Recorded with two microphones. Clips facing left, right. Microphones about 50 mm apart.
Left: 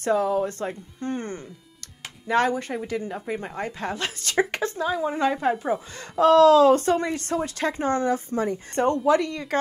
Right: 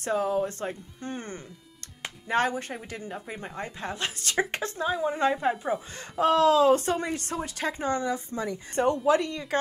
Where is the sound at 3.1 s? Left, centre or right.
Centre.